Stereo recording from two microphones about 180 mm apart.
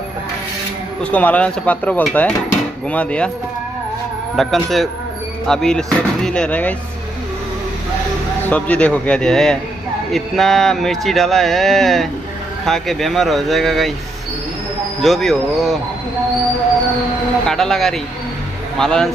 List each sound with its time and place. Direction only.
1.1 s speech: 10° left (ahead or behind)
4.4 s speech: centre (ahead or behind)
8.5 s speech: 10° left (ahead or behind)
15.0 s speech: centre (ahead or behind)
17.5 s speech: centre (ahead or behind)